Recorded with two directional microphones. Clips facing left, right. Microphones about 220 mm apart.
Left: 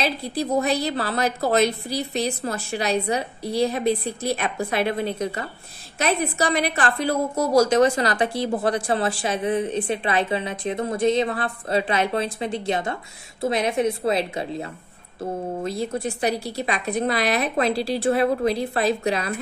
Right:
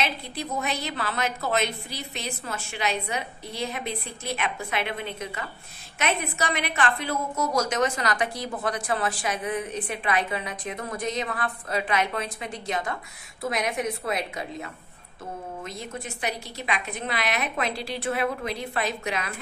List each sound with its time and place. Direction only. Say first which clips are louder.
0.0 s a woman's voice: left 6 dB; 35° left (ahead or behind)